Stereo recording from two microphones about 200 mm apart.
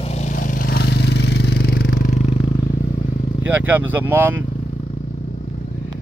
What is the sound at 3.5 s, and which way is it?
Speech, 10° right (ahead or behind).